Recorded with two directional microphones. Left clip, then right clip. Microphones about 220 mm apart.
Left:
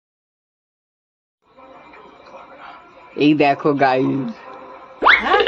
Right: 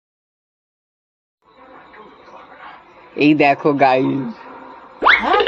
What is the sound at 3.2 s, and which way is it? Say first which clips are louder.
Speech: right 2 dB; 10° left (ahead or behind).